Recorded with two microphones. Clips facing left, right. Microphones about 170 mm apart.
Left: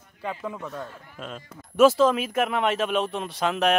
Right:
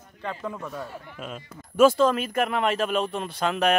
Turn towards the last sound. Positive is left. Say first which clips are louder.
# even
turn(degrees=0)  # may be behind; listen again after turning